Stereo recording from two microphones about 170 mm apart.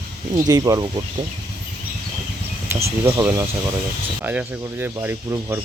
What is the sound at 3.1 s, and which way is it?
Speech, 15° right (ahead or behind).